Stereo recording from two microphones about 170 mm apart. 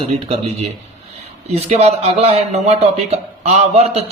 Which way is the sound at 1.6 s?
40° right (ahead or behind).